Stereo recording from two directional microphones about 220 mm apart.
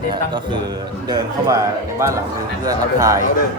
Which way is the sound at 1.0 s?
20° right (ahead or behind).